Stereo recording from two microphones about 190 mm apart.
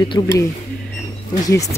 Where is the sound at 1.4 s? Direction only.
15° left (ahead or behind).